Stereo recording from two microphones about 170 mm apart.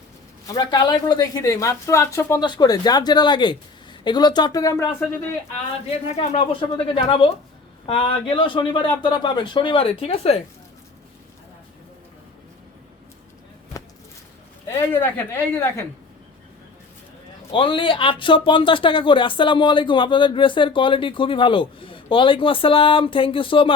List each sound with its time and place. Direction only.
0.4 s speech: 25° left (ahead or behind)
6.1 s a man's voice: 40° left (ahead or behind)
15.0 s a woman's voice: 15° left (ahead or behind)
17.5 s a man's voice: 30° left (ahead or behind)